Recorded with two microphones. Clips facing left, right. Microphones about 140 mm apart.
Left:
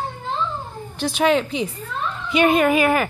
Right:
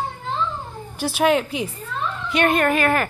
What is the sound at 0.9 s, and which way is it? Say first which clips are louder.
Speech: even; 5° right (ahead or behind).